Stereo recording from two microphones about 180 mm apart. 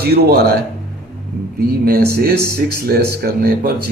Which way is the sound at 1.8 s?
55° right (ahead or behind).